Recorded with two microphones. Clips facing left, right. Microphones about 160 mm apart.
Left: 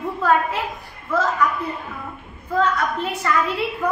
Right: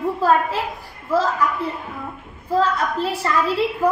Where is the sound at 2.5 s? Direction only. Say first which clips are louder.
Right 1 dB; 30° right (ahead or behind).